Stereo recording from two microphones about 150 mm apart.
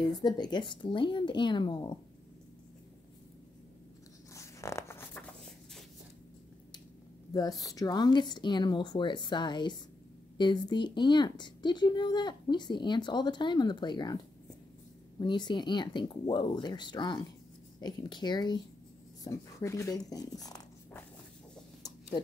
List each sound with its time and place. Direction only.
0.2 s speech: 30° left (ahead or behind)
4.3 s zipper: 20° left (ahead or behind)
7.3 s a woman's voice: 25° left (ahead or behind)